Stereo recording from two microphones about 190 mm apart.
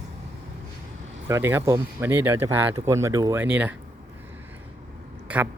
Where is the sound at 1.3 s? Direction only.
15° right (ahead or behind).